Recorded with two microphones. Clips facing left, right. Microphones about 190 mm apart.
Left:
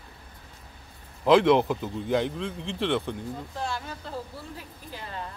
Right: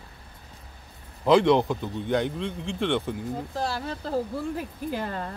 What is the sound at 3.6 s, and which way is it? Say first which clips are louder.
Speech: right 4 dB; 35° right (ahead or behind).